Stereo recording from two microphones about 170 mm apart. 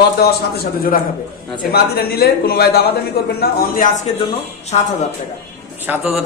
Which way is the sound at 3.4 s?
50° left (ahead or behind).